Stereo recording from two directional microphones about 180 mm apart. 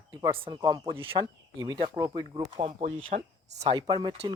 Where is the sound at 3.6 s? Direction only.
25° right (ahead or behind).